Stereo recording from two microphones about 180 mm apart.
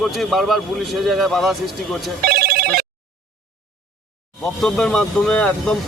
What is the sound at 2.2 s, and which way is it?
Telephone bell ringing, 60° right (ahead or behind).